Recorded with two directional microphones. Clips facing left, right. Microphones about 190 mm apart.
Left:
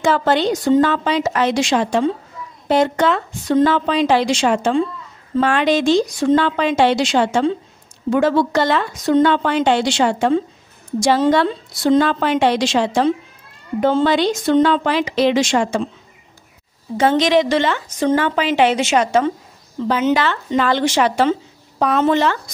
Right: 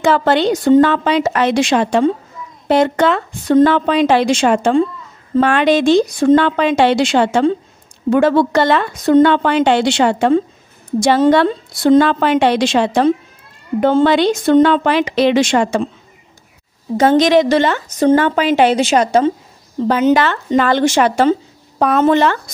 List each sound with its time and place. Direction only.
0.0 s a woman's voice: 65° right (ahead or behind)
16.9 s speech: 40° right (ahead or behind)